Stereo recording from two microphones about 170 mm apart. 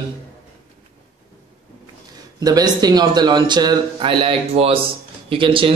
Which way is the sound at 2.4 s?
20° right (ahead or behind).